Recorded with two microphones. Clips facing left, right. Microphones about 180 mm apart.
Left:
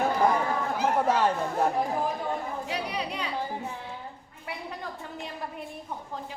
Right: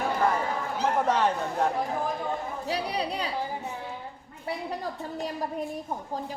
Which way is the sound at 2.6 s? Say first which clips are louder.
Right 3 dB; 35° right (ahead or behind).